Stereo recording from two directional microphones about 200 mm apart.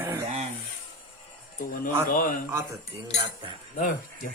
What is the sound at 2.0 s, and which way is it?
Speech, 45° left (ahead or behind).